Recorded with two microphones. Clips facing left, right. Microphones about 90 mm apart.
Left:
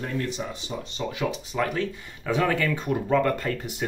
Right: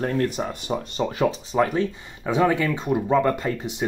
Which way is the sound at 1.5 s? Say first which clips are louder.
Right 5 dB; 20° right (ahead or behind).